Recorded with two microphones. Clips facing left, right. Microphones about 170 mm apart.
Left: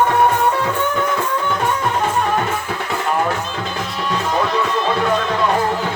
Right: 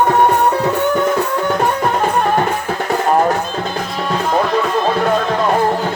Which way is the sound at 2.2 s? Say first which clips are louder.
Right 4 dB; 40° right (ahead or behind).